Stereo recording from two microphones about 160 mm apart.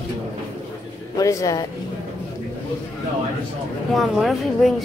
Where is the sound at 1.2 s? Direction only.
20° left (ahead or behind).